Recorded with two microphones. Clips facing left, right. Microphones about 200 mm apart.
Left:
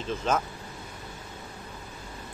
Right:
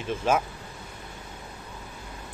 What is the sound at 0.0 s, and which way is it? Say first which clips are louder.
Speech: right 3 dB; 10° right (ahead or behind).